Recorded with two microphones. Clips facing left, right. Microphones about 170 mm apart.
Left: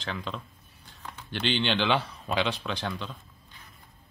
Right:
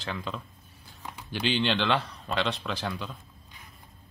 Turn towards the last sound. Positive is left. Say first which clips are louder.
# even
turn(degrees=-5)  # may be behind; listen again after turning